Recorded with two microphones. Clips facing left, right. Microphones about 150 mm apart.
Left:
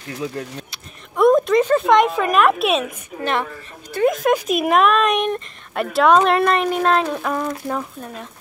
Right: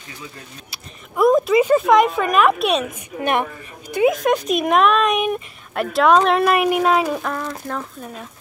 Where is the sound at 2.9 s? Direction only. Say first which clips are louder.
Right 2 dB; 15° right (ahead or behind).